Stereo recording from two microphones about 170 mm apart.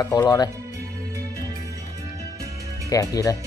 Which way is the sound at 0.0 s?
20° left (ahead or behind).